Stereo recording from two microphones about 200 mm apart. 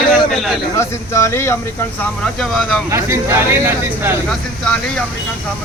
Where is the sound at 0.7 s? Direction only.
15° left (ahead or behind).